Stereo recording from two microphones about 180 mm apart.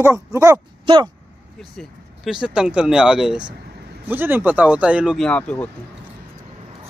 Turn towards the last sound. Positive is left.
turn(degrees=10)  # may be behind; listen again after turning